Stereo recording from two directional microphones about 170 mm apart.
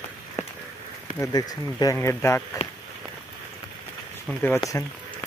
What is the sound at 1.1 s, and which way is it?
Speech, 20° left (ahead or behind).